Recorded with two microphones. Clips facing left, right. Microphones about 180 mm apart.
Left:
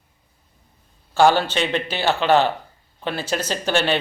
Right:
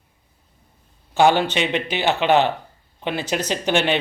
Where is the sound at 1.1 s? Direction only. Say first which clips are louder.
Even; 20° right (ahead or behind).